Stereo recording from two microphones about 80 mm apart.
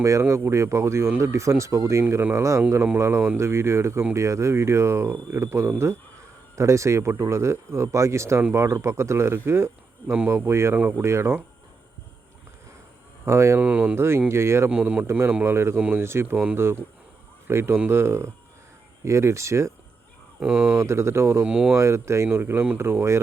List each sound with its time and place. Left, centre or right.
0.0 s speech: right
13.2 s speech: right
13.6 s speech: centre
13.9 s speech: right
14.7 s speech: centre
15.4 s speech: right
20.4 s speech: centre
20.7 s speech: right
21.4 s speech: centre
21.8 s speech: right